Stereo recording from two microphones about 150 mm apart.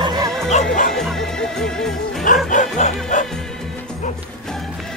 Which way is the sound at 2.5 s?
55° left (ahead or behind).